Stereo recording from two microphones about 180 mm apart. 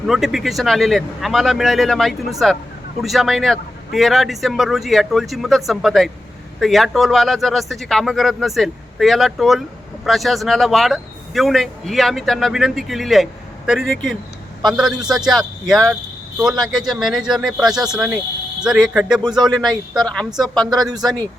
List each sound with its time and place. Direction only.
0.1 s a man's voice: centre (ahead or behind)
20.7 s speech: 20° right (ahead or behind)